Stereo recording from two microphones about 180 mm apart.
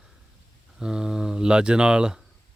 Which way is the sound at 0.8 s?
5° right (ahead or behind).